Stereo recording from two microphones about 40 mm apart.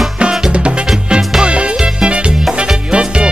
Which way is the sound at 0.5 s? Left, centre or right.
Right.